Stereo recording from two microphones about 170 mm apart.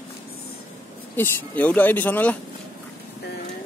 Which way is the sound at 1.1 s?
10° left (ahead or behind).